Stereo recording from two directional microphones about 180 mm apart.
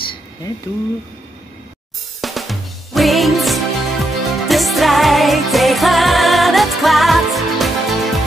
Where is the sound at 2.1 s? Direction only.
Centre (ahead or behind).